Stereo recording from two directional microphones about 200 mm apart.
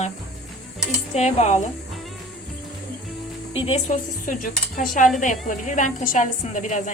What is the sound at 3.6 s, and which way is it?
A woman's voice, 30° left (ahead or behind).